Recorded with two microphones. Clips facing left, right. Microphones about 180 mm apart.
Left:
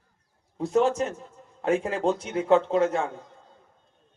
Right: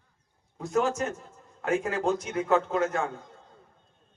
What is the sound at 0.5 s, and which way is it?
A man's voice, 30° left (ahead or behind).